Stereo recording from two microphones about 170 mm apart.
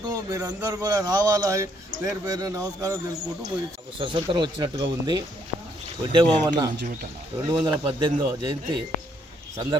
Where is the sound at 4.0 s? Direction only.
25° right (ahead or behind).